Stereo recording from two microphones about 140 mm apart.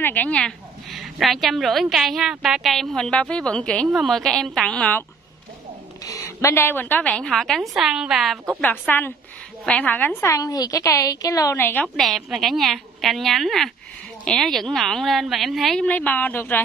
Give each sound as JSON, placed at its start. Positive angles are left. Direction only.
{"t": 0.0, "sound": "a woman's voice", "side_deg": 10}
{"t": 6.0, "sound": "a woman's voice", "side_deg": 20}
{"t": 10.3, "sound": "a woman's voice", "side_deg": 25}
{"t": 12.0, "sound": "a woman's voice", "side_deg": 0}